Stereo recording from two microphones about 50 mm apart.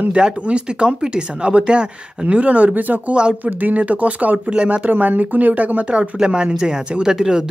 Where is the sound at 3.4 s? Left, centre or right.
Right.